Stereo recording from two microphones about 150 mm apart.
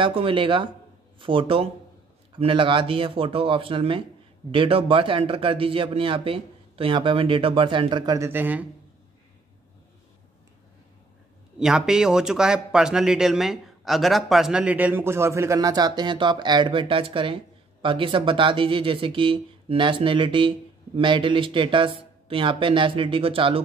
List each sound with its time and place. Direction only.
0.0 s speech: 35° right (ahead or behind)
8.3 s speech: 10° right (ahead or behind)
11.6 s speech: 5° right (ahead or behind); by 23.6 s 35° right (ahead or behind)